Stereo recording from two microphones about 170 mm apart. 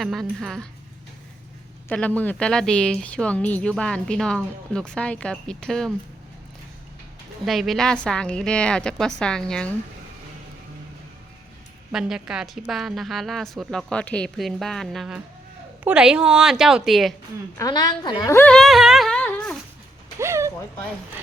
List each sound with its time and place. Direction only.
0.0 s a woman's voice: centre (ahead or behind)
1.9 s a woman's voice: 10° left (ahead or behind)
7.4 s a woman's voice: centre (ahead or behind)
11.9 s a woman's voice: 5° right (ahead or behind)
17.6 s a woman's voice: 20° left (ahead or behind); by 19.5 s 5° left (ahead or behind)
20.1 s a sound: 15° right (ahead or behind)